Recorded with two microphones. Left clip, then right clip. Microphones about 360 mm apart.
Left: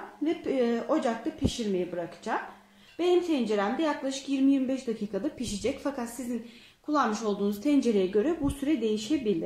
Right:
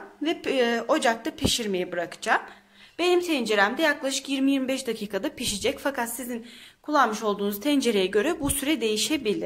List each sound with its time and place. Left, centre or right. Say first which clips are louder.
0.2 s speech: right 4 dB; right